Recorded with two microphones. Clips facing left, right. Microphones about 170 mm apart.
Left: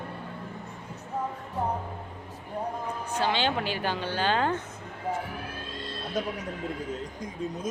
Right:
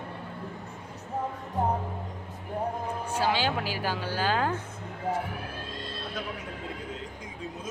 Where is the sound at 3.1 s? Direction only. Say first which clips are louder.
Even; 10° right (ahead or behind).